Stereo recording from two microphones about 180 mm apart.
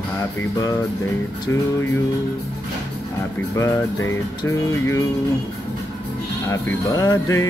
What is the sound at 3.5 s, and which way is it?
Music, 15° left (ahead or behind).